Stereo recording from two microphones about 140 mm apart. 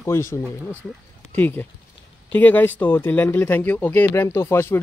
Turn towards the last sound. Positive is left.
turn(degrees=20)  # may be behind; listen again after turning